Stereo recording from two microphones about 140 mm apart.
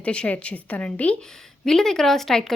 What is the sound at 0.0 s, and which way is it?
A woman's voice, 10° left (ahead or behind).